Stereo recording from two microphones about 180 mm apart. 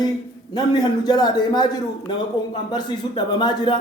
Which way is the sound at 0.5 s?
25° left (ahead or behind).